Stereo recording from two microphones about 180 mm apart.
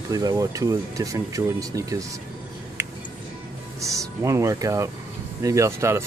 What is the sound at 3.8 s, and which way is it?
Speech, 15° right (ahead or behind).